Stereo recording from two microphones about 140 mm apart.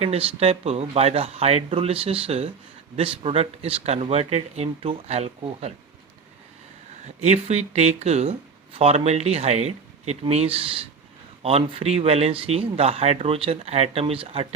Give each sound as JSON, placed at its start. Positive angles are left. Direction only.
{"t": 0.0, "sound": "speech", "side_deg": -45}
{"t": 7.2, "sound": "speech", "side_deg": -50}